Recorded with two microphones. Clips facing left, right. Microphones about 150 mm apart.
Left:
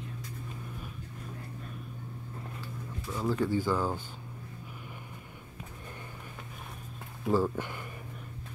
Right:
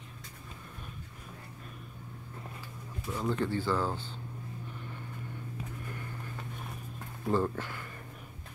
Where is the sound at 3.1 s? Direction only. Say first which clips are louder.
Left 2 dB; 5° left (ahead or behind).